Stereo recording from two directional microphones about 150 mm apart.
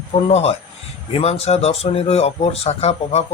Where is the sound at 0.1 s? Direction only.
45° left (ahead or behind).